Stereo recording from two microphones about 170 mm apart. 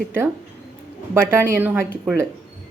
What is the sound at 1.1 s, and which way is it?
Speech, 15° right (ahead or behind).